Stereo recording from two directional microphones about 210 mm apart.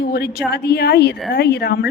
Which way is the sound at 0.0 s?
50° left (ahead or behind).